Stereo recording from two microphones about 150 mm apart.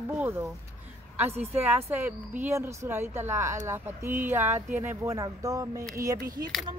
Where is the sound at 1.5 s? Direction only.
15° right (ahead or behind).